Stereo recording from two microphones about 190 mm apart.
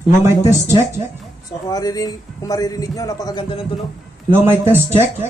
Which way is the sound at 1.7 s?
20° left (ahead or behind).